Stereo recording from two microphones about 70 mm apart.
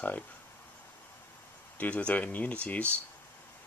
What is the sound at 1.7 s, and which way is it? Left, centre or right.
Speech, left.